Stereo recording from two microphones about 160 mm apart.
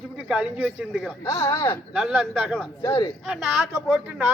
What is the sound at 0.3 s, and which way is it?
Speech, 5° right (ahead or behind).